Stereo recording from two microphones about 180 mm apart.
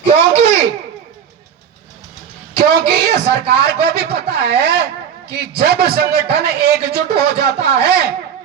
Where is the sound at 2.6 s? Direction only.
65° right (ahead or behind).